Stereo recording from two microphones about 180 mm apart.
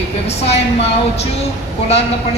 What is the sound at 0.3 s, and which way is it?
A woman's voice, 35° left (ahead or behind).